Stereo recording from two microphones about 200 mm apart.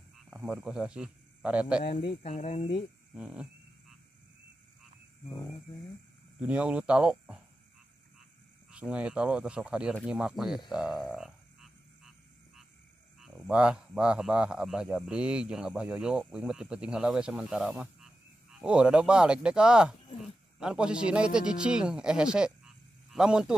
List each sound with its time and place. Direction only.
0.2 s speech: 5° right (ahead or behind)
2.0 s speech: 30° left (ahead or behind)
3.2 s speech: 5° right (ahead or behind)
6.4 s speech: 5° right (ahead or behind)
8.7 s speech: 5° right (ahead or behind)
10.7 s frog: 5° right (ahead or behind)
13.2 s speech: 5° right (ahead or behind)
20.1 s a sound: 30° left (ahead or behind)
20.5 s speech: 5° right (ahead or behind)